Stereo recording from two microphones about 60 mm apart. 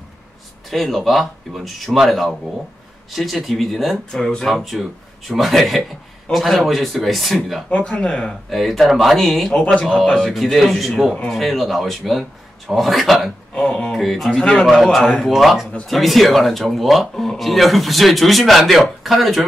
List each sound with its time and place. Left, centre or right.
0.7 s speech: centre
4.1 s speech: centre
4.5 s speech: centre
7.7 s speech: centre
13.6 s speech: centre
13.9 s speech: centre
15.3 s speech: centre